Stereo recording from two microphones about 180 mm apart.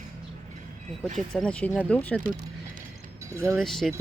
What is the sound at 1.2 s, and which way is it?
Speech, 5° left (ahead or behind).